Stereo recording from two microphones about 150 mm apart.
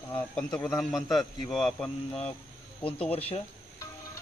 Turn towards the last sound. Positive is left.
turn(degrees=10)  # may be behind; listen again after turning